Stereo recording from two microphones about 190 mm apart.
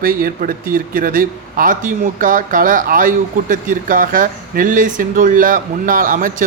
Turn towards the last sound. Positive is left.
turn(degrees=-45)  # may be behind; listen again after turning